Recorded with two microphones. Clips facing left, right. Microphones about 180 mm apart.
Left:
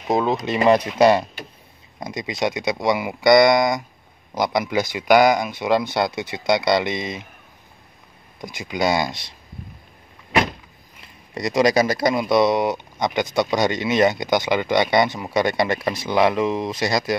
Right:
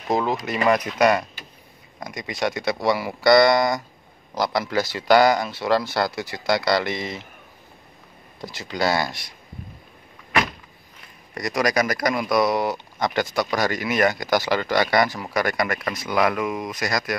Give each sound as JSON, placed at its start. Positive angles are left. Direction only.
{"t": 0.1, "sound": "speech", "side_deg": 20}
{"t": 8.4, "sound": "speech", "side_deg": 15}
{"t": 11.3, "sound": "speech", "side_deg": 25}